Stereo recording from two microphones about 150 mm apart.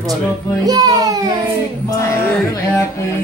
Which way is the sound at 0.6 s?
25° right (ahead or behind).